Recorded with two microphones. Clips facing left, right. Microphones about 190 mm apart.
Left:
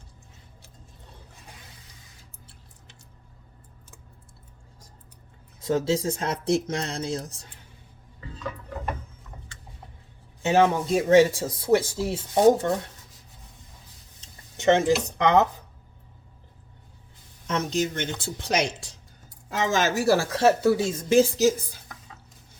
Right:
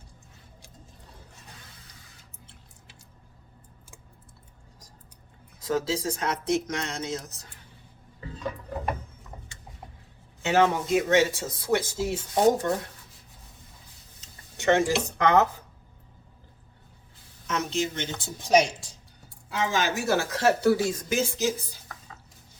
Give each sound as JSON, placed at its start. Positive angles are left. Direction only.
{"t": 5.6, "sound": "speech", "side_deg": 25}
{"t": 10.4, "sound": "speech", "side_deg": 20}
{"t": 10.8, "sound": "speech", "side_deg": 30}
{"t": 14.6, "sound": "speech", "side_deg": 20}
{"t": 17.4, "sound": "speech", "side_deg": 35}
{"t": 19.5, "sound": "speech", "side_deg": 45}
{"t": 20.1, "sound": "speech", "side_deg": 25}